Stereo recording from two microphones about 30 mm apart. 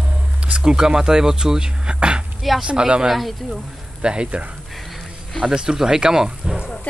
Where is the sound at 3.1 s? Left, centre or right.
Centre.